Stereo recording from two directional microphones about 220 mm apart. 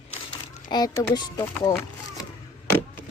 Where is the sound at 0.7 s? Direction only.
20° left (ahead or behind).